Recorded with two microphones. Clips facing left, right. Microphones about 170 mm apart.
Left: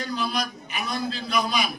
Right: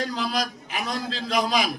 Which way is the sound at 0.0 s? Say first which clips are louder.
Right 1 dB; 90° right.